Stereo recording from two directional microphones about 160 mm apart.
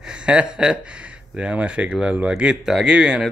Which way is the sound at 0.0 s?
5° right (ahead or behind).